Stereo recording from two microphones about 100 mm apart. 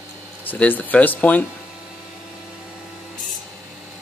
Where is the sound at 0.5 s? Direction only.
15° left (ahead or behind).